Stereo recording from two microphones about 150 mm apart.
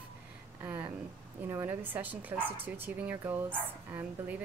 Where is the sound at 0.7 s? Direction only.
15° right (ahead or behind).